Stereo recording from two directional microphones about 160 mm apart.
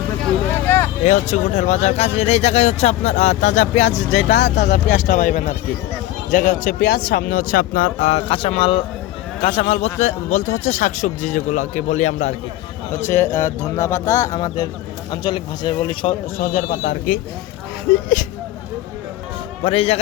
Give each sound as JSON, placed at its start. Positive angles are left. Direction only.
{"t": 0.5, "sound": "vehicle", "side_deg": 15}
{"t": 1.0, "sound": "speech", "side_deg": 45}
{"t": 4.3, "sound": "speech", "side_deg": 90}
{"t": 4.7, "sound": "a man's voice", "side_deg": 50}
{"t": 13.1, "sound": "speech", "side_deg": 15}
{"t": 16.6, "sound": "speech", "side_deg": 50}
{"t": 19.6, "sound": "a man's voice", "side_deg": 40}